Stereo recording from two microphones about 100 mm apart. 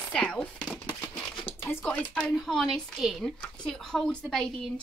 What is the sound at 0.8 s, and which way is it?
Crumpling, 45° left (ahead or behind).